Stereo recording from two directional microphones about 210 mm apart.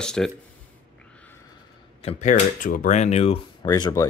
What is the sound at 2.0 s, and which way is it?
Speech, 30° left (ahead or behind).